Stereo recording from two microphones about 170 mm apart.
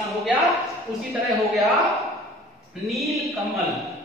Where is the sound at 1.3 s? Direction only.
Centre (ahead or behind).